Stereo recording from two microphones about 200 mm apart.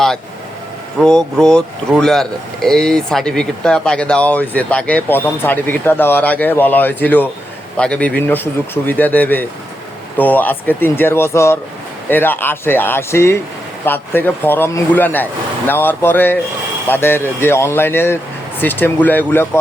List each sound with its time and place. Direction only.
0.9 s speech: 5° left (ahead or behind)